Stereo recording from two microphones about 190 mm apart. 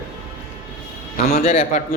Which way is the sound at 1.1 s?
40° left (ahead or behind).